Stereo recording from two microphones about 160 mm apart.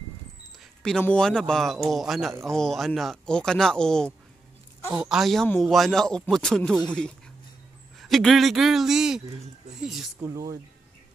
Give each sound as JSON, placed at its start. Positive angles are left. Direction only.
{"t": 0.8, "sound": "speech", "side_deg": 5}
{"t": 10.2, "sound": "speech", "side_deg": -20}